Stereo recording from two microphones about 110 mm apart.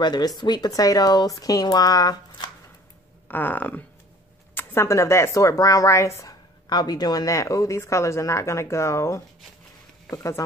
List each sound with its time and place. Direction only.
0.0 s speech: 40° left (ahead or behind)
3.3 s a sound: 15° left (ahead or behind)
4.6 s speech: 25° left (ahead or behind)
6.7 s speech: 40° left (ahead or behind)